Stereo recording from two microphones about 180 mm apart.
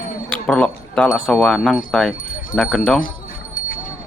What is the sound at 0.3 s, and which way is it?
Speech, 5° left (ahead or behind).